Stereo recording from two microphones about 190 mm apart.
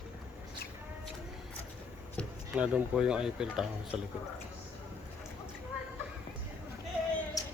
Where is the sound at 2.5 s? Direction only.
5° right (ahead or behind).